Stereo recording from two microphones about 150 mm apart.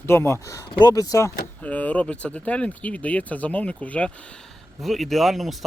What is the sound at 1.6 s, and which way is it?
Speech, 10° left (ahead or behind).